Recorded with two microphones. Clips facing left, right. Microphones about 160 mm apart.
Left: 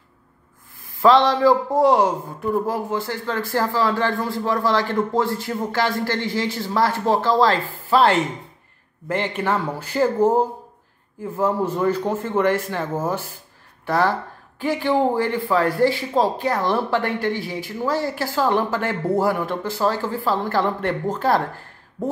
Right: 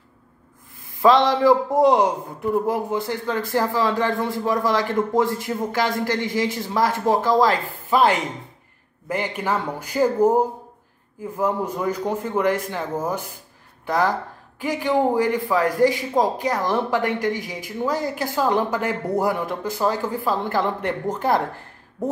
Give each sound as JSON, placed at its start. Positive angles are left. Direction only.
{"t": 0.8, "sound": "a man's voice", "side_deg": -20}
{"t": 9.4, "sound": "speech", "side_deg": -10}
{"t": 11.7, "sound": "speech", "side_deg": -10}
{"t": 13.8, "sound": "a man's voice", "side_deg": -15}